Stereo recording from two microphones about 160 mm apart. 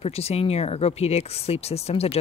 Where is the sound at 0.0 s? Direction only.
40° left (ahead or behind).